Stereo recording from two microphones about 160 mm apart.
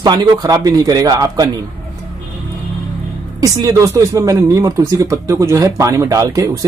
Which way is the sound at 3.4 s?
20° right (ahead or behind).